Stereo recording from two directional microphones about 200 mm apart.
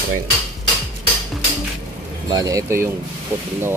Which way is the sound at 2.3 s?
20° right (ahead or behind).